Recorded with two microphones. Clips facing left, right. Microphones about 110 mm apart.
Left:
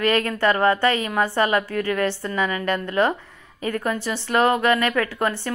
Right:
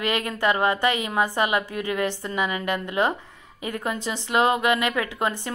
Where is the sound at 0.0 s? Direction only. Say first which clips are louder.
Left 4 dB; 20° right (ahead or behind).